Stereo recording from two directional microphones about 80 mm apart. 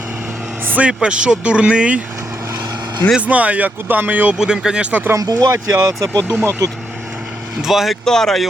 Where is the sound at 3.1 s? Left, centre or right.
Centre.